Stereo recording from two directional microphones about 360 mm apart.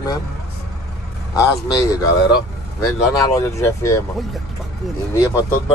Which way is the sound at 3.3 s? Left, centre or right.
Centre.